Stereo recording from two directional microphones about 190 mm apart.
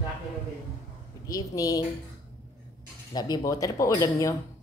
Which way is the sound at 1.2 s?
20° left (ahead or behind).